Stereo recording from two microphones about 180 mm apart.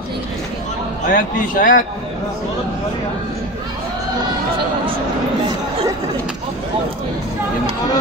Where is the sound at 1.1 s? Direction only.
50° left (ahead or behind).